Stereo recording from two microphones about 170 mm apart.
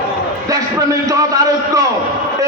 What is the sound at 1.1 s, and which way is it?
Speech, 20° right (ahead or behind).